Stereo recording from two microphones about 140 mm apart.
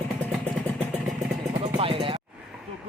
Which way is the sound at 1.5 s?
40° right (ahead or behind).